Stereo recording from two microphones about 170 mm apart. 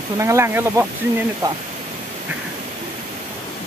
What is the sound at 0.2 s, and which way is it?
Speech, 15° right (ahead or behind).